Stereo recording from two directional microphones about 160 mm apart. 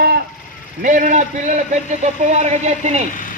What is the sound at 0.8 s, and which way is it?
A man's voice, 55° right (ahead or behind).